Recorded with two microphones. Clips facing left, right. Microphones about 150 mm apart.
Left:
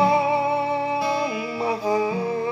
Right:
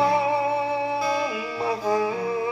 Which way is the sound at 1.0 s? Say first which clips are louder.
Left 1 dB; 20° left (ahead or behind).